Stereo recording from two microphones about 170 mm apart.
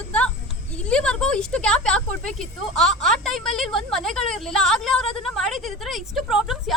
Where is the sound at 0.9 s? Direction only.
5° left (ahead or behind).